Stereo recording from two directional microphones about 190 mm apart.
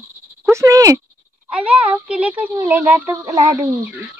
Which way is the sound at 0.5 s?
15° right (ahead or behind).